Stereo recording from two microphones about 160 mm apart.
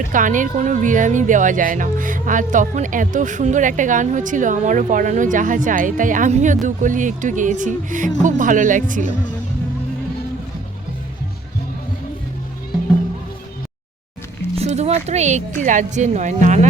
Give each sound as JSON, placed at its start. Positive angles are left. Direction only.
{"t": 0.1, "sound": "a woman's voice", "side_deg": -55}
{"t": 14.5, "sound": "music", "side_deg": -40}
{"t": 15.6, "sound": "a woman's voice", "side_deg": -50}